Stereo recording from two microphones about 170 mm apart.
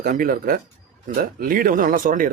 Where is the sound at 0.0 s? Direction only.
55° right (ahead or behind).